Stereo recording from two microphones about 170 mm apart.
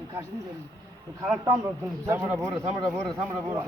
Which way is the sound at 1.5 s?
15° right (ahead or behind).